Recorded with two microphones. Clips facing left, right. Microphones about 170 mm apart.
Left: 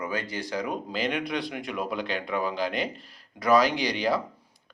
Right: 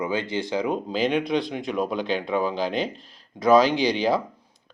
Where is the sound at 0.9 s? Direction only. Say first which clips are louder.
Right 6 dB; centre (ahead or behind).